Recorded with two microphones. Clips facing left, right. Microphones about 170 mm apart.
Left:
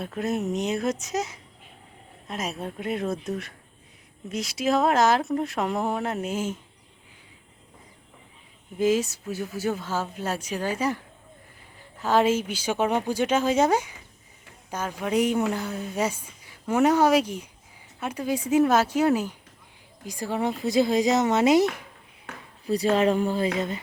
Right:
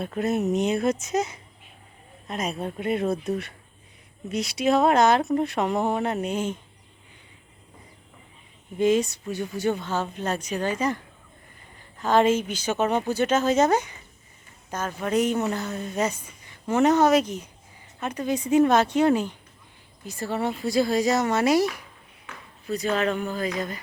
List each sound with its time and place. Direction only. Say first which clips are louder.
0.0 s speech: right 3 dB; centre (ahead or behind)
8.8 s a woman's voice: right 2 dB; 5° left (ahead or behind)
22.6 s speech: left 3 dB; 35° left (ahead or behind)